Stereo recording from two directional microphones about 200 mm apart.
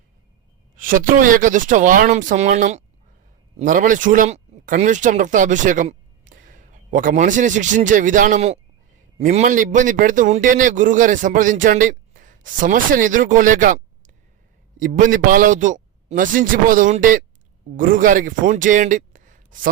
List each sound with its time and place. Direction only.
0.8 s a man's voice: 45° right (ahead or behind)